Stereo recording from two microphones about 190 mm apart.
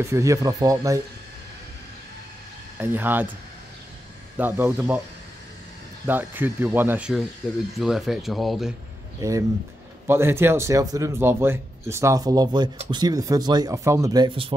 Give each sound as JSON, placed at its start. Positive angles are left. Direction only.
{"t": 0.0, "sound": "a man's voice", "side_deg": -15}
{"t": 2.8, "sound": "a man's voice", "side_deg": -10}
{"t": 4.4, "sound": "a man's voice", "side_deg": -10}
{"t": 6.0, "sound": "a man's voice", "side_deg": -10}
{"t": 9.2, "sound": "a man's voice", "side_deg": -15}